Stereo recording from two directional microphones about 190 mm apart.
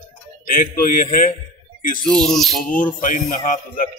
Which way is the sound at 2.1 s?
5° left (ahead or behind).